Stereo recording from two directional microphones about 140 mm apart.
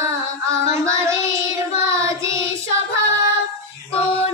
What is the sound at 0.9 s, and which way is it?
Child singing, 20° right (ahead or behind).